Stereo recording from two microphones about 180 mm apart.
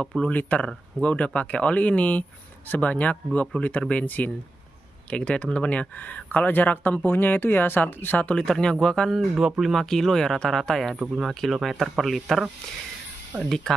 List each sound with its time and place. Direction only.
0.0 s speech: 5° left (ahead or behind)